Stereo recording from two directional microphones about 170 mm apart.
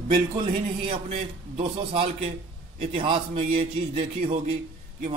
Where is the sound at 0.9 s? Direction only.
35° right (ahead or behind).